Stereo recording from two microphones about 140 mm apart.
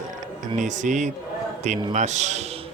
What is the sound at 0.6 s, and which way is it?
A man's voice, 60° right (ahead or behind).